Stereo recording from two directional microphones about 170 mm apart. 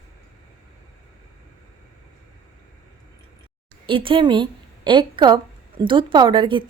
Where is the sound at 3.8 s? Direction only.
30° right (ahead or behind).